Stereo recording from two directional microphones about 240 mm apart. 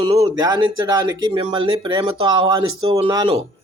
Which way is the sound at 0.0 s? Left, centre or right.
Centre.